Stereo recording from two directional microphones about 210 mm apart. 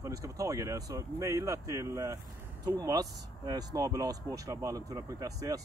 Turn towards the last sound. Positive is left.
turn(degrees=-15)  # may be behind; listen again after turning